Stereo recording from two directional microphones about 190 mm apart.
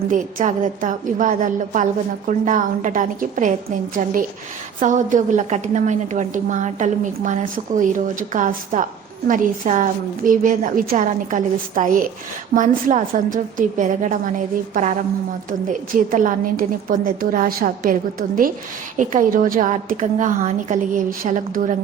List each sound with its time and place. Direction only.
0.1 s a woman's voice: 45° right (ahead or behind)
4.8 s a woman's voice: 40° right (ahead or behind)